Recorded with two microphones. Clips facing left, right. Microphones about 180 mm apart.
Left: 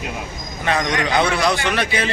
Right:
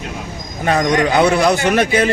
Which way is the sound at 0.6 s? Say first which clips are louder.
Right 6 dB; 40° right (ahead or behind).